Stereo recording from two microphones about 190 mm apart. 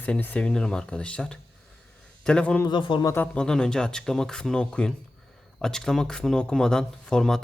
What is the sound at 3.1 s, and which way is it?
A man's voice, 5° left (ahead or behind).